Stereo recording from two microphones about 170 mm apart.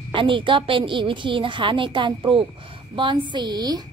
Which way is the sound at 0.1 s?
30° right (ahead or behind).